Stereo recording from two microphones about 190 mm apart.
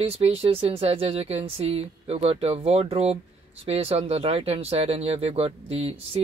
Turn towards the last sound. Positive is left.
turn(degrees=-30)  # may be behind; listen again after turning